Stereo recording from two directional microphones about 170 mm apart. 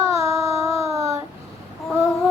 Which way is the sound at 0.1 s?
20° right (ahead or behind).